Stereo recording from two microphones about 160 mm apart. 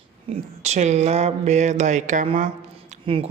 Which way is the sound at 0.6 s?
45° right (ahead or behind).